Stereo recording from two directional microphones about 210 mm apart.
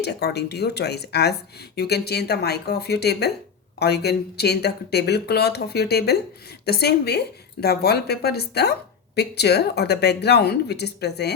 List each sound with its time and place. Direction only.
0.0 s speech: 50° left (ahead or behind)